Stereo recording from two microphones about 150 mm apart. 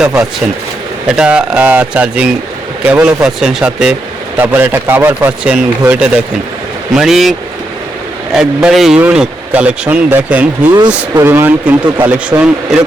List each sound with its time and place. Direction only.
0.0 s a man's voice: 5° right (ahead or behind)